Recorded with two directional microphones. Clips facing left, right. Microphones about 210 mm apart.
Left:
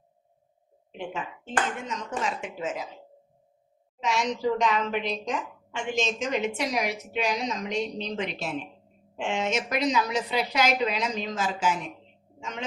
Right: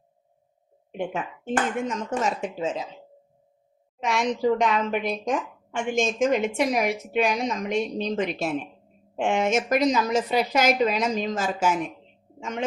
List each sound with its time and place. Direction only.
1.9 s a woman's voice: 45° right (ahead or behind)
2.6 s speech: 25° right (ahead or behind)
4.0 s a woman's voice: 55° right (ahead or behind)